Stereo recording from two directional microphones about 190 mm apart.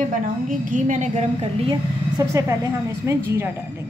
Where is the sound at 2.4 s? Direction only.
15° right (ahead or behind).